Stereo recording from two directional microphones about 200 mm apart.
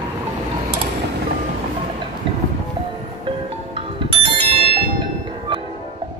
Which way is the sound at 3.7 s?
25° right (ahead or behind).